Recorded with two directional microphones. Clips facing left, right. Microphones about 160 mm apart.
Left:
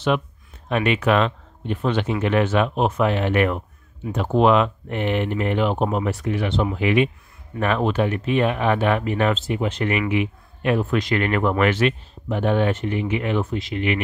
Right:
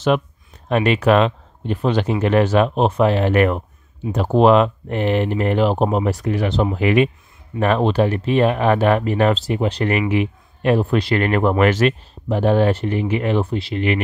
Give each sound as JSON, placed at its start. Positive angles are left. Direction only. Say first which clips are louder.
{"t": 0.7, "sound": "speech", "louder": "right 4 dB", "side_deg": -40}